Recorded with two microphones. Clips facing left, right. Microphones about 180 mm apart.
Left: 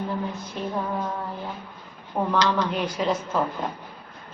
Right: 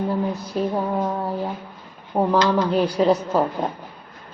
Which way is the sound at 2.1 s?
40° right (ahead or behind).